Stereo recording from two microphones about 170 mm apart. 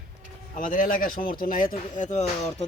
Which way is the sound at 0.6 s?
55° left (ahead or behind).